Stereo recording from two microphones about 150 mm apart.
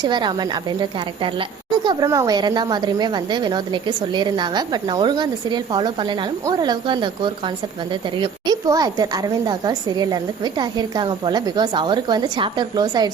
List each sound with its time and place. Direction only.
0.0 s a woman's voice: 30° right (ahead or behind)